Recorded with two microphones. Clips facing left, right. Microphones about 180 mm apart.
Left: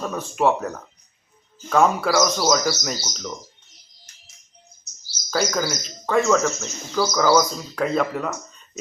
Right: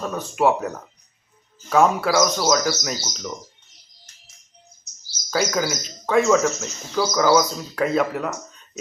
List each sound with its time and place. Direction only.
0.0 s speech: 5° right (ahead or behind)
5.3 s speech: 5° right (ahead or behind)